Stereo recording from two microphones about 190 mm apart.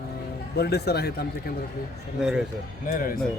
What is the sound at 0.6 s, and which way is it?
Speech, 60° left (ahead or behind).